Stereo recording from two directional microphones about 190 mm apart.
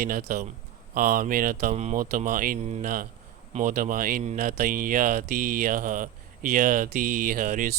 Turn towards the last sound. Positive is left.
turn(degrees=-45)  # may be behind; listen again after turning